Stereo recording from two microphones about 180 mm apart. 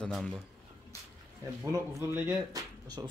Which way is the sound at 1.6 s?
15° right (ahead or behind).